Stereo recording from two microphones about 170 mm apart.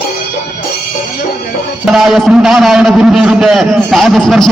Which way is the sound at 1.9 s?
Centre (ahead or behind).